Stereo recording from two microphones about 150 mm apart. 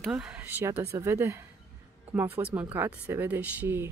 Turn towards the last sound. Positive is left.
turn(degrees=-15)  # may be behind; listen again after turning